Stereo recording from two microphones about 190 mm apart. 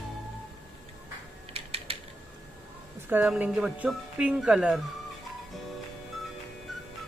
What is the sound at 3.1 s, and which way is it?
Speech, 10° right (ahead or behind).